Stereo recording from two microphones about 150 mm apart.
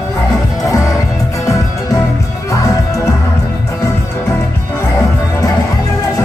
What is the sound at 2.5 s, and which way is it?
Music, 20° left (ahead or behind).